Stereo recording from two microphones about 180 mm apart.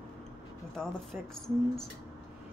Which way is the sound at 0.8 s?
5° left (ahead or behind).